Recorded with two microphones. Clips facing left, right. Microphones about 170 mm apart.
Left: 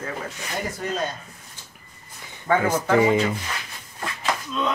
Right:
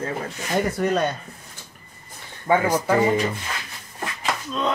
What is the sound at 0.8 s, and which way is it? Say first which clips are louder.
Speech: right 5 dB; 60° right (ahead or behind).